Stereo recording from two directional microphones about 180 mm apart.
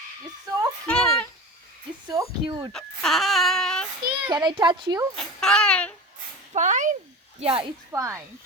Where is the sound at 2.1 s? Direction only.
25° right (ahead or behind).